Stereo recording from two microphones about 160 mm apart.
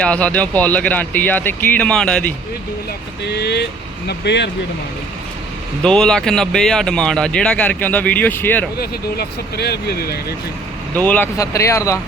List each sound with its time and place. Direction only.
0.0 s speech: 10° left (ahead or behind)
3.2 s speech: 90° left
5.8 s speech: 5° left (ahead or behind)
8.8 s speech: 85° left
10.9 s speech: 10° left (ahead or behind)